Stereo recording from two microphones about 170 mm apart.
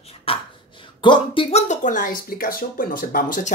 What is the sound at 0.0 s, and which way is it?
Speech, 35° left (ahead or behind).